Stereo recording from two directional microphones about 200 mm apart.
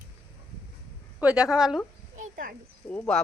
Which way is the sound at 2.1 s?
40° right (ahead or behind).